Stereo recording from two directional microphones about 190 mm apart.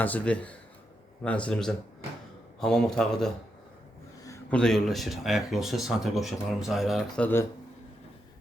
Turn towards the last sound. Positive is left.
turn(degrees=0)  # may be behind; listen again after turning